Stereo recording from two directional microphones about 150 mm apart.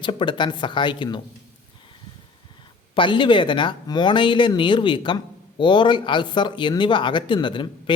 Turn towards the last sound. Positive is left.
turn(degrees=35)  # may be behind; listen again after turning